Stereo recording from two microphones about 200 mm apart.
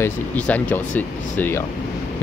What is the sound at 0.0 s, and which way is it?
Speech, 10° left (ahead or behind).